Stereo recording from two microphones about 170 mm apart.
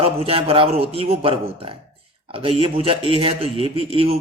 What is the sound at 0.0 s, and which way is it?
A man's voice, 35° right (ahead or behind).